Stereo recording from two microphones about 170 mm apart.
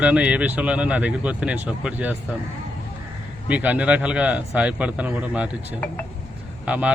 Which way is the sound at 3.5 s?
10° right (ahead or behind).